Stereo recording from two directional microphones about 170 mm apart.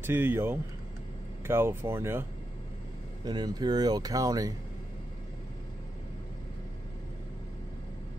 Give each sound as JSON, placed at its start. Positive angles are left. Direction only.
{"t": 0.0, "sound": "speech", "side_deg": -15}
{"t": 3.3, "sound": "speech", "side_deg": -25}